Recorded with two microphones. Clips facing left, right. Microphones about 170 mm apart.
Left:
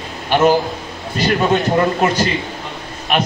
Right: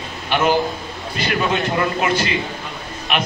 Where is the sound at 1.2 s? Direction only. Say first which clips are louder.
Left 5 dB; 40° left (ahead or behind).